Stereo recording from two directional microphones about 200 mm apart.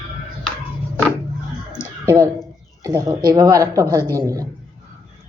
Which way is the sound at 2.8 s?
20° right (ahead or behind).